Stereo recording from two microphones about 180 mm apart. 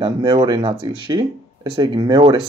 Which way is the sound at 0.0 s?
25° right (ahead or behind).